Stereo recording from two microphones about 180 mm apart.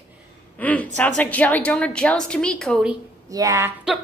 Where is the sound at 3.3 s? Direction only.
20° right (ahead or behind).